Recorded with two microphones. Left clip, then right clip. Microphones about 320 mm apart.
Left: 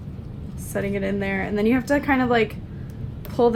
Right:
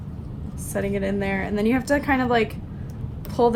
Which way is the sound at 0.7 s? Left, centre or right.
Centre.